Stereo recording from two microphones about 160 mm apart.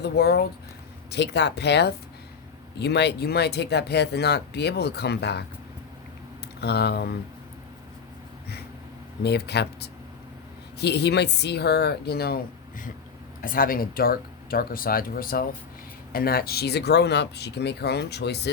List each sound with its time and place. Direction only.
0.0 s speech: 90° left
6.6 s speech: 90° left
9.2 s speech: 90° left